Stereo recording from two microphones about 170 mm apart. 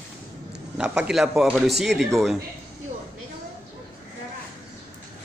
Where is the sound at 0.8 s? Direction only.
5° right (ahead or behind).